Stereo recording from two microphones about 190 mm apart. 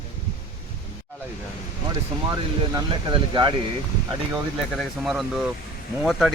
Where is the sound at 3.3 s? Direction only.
25° right (ahead or behind).